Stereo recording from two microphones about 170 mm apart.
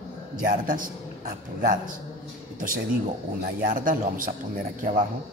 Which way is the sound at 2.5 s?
55° right (ahead or behind).